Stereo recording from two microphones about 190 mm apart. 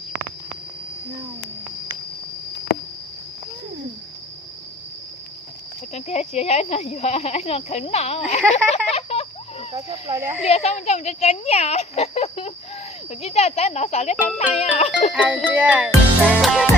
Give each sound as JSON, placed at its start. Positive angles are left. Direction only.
{"t": 5.9, "sound": "speech", "side_deg": 35}
{"t": 8.5, "sound": "a sound", "side_deg": 35}
{"t": 9.7, "sound": "music", "side_deg": -15}
{"t": 10.4, "sound": "speech", "side_deg": 35}
{"t": 15.1, "sound": "music", "side_deg": -5}